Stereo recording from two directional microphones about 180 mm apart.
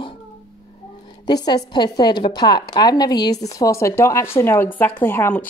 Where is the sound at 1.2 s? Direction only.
20° left (ahead or behind).